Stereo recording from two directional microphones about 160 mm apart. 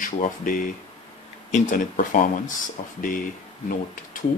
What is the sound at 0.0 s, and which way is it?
Speech, 55° left (ahead or behind).